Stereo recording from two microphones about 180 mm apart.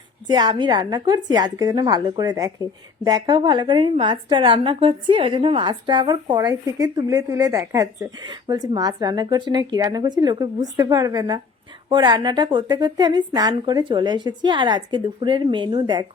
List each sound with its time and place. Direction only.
0.3 s a woman's voice: 25° right (ahead or behind)